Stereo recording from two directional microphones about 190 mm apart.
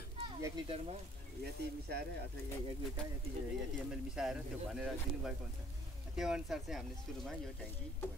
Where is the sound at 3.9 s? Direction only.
5° right (ahead or behind).